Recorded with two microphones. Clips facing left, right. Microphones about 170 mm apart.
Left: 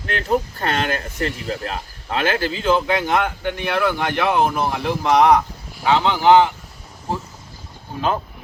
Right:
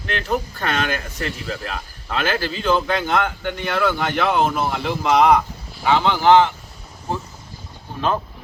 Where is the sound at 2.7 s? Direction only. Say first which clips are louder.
Left 1 dB; 10° left (ahead or behind).